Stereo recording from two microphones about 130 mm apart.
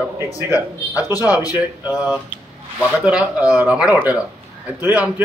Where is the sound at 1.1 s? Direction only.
25° left (ahead or behind).